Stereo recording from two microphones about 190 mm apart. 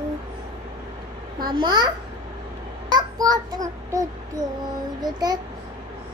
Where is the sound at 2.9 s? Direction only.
20° right (ahead or behind).